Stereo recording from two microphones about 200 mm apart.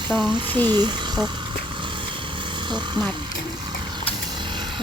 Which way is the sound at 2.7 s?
20° right (ahead or behind).